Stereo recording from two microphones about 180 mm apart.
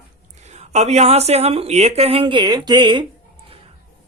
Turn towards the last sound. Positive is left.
turn(degrees=-25)  # may be behind; listen again after turning